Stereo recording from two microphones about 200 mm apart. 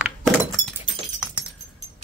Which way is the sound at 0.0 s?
Centre (ahead or behind).